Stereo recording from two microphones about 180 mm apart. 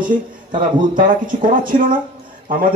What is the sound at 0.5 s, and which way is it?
A man's voice, 50° right (ahead or behind).